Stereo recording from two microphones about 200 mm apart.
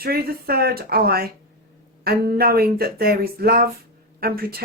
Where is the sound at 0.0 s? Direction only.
50° right (ahead or behind).